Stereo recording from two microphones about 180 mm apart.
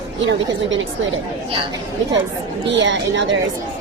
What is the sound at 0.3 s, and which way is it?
Speech, 90° right.